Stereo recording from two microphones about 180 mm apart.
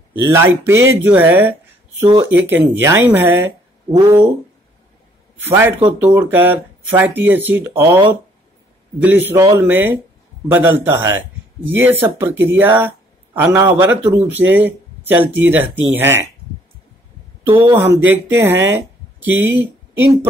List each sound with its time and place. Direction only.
0.1 s speech: 15° right (ahead or behind)
3.9 s speech: 25° right (ahead or behind)
5.4 s speech: 15° right (ahead or behind)
9.0 s speech: 10° right (ahead or behind)
17.6 s speech: 10° right (ahead or behind)